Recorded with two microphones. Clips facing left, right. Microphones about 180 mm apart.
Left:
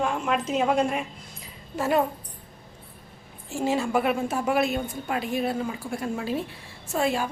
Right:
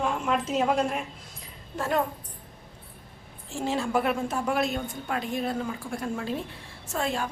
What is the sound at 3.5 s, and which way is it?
A woman's voice, 5° left (ahead or behind).